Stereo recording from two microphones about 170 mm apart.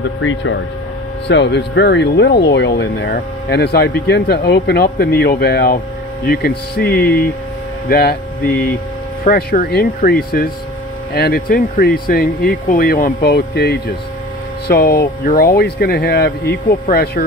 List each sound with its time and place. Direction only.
0.2 s speech: 90° left; by 17.2 s 65° left (ahead or behind)